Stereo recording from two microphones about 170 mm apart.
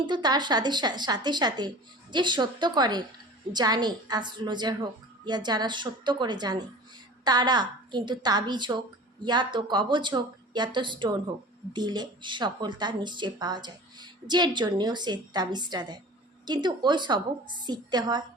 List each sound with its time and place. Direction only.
0.0 s speech: 25° right (ahead or behind)